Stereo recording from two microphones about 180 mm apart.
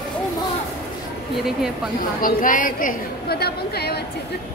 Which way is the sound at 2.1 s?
50° left (ahead or behind).